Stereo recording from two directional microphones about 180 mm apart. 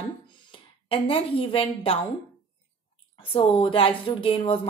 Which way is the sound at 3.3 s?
30° left (ahead or behind).